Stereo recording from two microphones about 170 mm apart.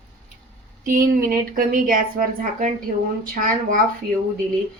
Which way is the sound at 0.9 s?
55° right (ahead or behind).